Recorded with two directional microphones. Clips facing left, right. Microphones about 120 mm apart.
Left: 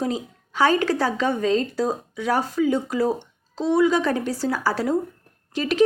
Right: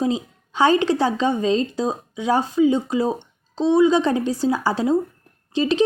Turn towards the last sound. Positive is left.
turn(degrees=-25)  # may be behind; listen again after turning